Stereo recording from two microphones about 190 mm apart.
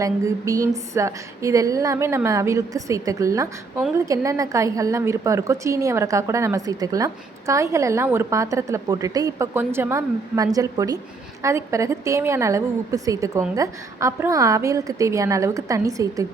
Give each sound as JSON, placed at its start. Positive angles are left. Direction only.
{"t": 0.0, "sound": "a woman's voice", "side_deg": -15}